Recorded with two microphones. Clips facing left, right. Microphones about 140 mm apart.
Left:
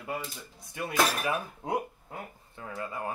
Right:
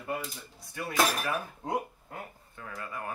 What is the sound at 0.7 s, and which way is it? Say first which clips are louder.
Speech: even; 20° left (ahead or behind).